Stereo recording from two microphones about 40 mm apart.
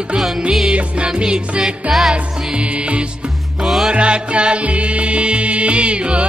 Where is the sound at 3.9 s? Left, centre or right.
Right.